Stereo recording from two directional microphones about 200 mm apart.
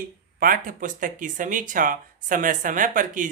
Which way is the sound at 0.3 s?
45° right (ahead or behind).